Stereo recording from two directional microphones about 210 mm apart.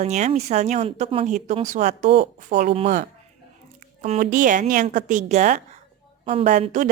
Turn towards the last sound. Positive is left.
turn(degrees=-35)  # may be behind; listen again after turning